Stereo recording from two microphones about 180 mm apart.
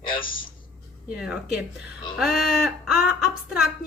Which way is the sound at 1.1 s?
5° right (ahead or behind).